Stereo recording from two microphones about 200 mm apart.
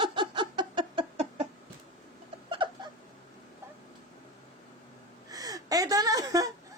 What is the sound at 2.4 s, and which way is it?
Cat, 25° right (ahead or behind).